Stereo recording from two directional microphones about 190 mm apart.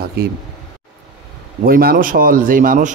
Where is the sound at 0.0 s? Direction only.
55° right (ahead or behind).